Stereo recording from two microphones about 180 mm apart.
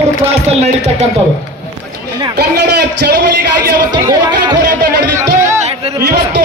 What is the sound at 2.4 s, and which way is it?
Speech, 70° right (ahead or behind).